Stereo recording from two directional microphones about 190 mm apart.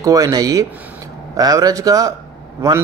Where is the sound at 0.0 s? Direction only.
20° right (ahead or behind).